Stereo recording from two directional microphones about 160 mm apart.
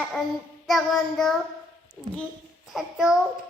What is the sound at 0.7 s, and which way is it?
Speech, centre (ahead or behind).